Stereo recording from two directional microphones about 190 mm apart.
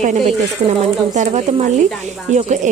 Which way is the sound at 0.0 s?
40° right (ahead or behind).